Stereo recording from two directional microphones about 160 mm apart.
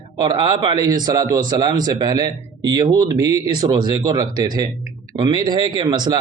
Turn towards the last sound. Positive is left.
turn(degrees=-25)  # may be behind; listen again after turning